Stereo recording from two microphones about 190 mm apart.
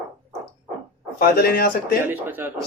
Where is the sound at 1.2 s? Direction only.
55° left (ahead or behind).